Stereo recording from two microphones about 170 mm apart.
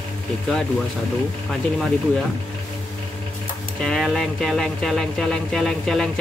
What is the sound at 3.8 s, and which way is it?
Speech, centre (ahead or behind).